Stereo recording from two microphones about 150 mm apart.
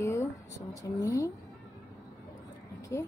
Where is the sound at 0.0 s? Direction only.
20° left (ahead or behind).